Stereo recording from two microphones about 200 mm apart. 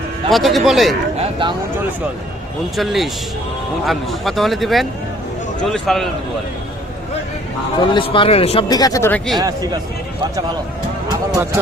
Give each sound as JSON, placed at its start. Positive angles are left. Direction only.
{"t": 0.3, "sound": "speech", "side_deg": 0}
{"t": 2.7, "sound": "speech", "side_deg": 0}
{"t": 7.8, "sound": "speech", "side_deg": 25}
{"t": 9.4, "sound": "speech", "side_deg": -20}
{"t": 11.3, "sound": "speech", "side_deg": -15}